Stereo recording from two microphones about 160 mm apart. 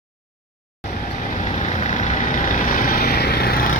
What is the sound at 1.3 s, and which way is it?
Vehicle, 45° left (ahead or behind).